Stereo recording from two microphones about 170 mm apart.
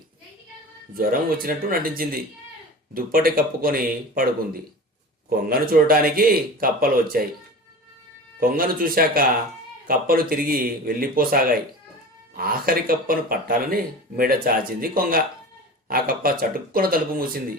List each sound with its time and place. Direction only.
0.9 s a man's voice: 60° right (ahead or behind)
5.3 s a man's voice: 60° right (ahead or behind)
8.4 s a man's voice: 55° right (ahead or behind)